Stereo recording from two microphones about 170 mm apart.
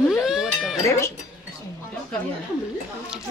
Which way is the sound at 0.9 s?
15° left (ahead or behind).